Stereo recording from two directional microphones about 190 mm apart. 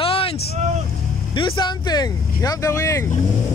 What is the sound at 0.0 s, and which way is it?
Vehicle, 30° left (ahead or behind).